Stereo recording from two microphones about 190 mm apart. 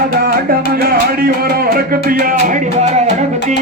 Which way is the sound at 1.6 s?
50° right (ahead or behind).